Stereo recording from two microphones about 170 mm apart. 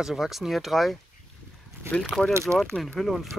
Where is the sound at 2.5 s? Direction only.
Centre (ahead or behind).